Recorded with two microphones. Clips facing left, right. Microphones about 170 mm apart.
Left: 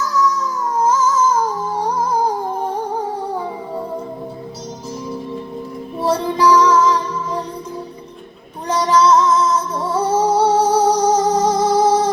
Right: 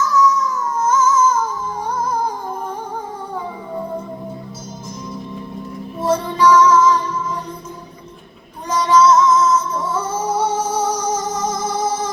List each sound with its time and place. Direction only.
0.8 s humming: 35° left (ahead or behind)
6.0 s music: 35° left (ahead or behind)
8.6 s music: 35° left (ahead or behind)